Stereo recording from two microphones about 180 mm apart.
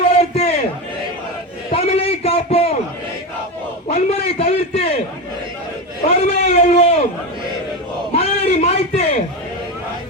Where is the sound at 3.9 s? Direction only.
35° left (ahead or behind).